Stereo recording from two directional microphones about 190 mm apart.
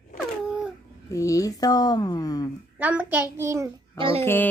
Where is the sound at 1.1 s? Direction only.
15° left (ahead or behind).